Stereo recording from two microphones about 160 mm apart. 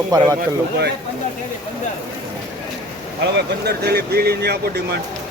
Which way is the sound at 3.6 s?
90° right.